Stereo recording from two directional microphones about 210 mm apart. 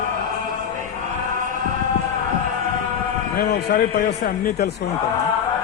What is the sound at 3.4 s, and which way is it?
A man's voice, 50° left (ahead or behind).